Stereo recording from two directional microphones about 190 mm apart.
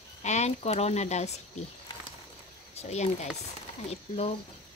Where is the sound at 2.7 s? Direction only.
35° left (ahead or behind).